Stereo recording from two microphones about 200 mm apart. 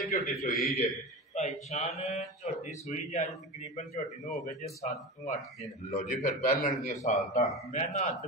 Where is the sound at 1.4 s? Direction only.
35° left (ahead or behind).